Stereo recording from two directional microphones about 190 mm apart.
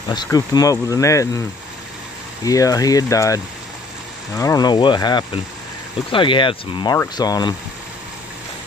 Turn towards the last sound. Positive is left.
turn(degrees=20)  # may be behind; listen again after turning